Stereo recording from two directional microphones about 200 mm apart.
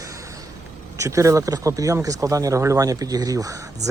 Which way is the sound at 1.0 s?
15° right (ahead or behind).